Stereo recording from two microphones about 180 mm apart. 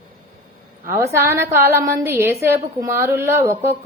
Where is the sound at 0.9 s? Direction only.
15° right (ahead or behind).